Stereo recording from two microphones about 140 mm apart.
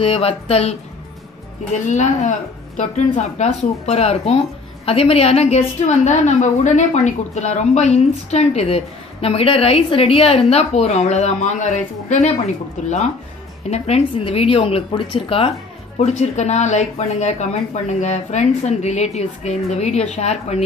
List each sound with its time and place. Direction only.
0.0 s a woman's voice: 45° left (ahead or behind)
1.9 s a woman's voice: 55° left (ahead or behind)
13.7 s a woman's voice: 50° left (ahead or behind)
16.0 s a woman's voice: 55° left (ahead or behind)